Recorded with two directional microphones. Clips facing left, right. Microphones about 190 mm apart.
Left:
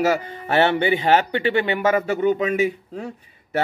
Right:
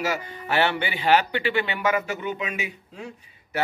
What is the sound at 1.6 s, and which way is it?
A man's voice, 45° left (ahead or behind).